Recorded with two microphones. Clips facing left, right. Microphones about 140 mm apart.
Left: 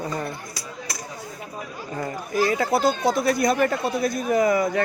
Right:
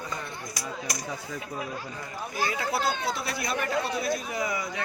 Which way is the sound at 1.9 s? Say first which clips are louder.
Left 9 dB; 50° left (ahead or behind).